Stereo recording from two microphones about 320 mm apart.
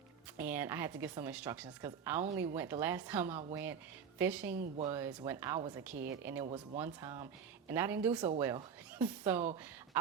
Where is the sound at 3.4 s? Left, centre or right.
Centre.